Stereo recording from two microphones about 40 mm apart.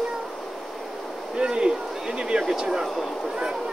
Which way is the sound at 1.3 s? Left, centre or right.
Right.